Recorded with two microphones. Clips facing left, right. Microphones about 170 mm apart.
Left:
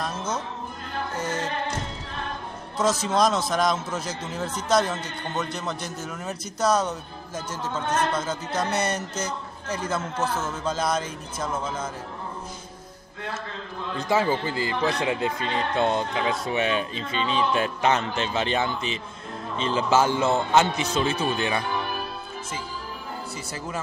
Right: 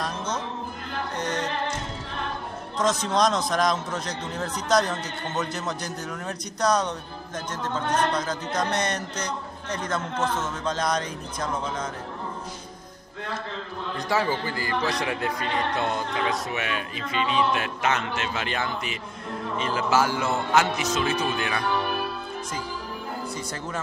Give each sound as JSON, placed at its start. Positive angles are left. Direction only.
{"t": 0.0, "sound": "music", "side_deg": 5}
{"t": 2.8, "sound": "a man's voice", "side_deg": 5}
{"t": 14.0, "sound": "speech", "side_deg": 20}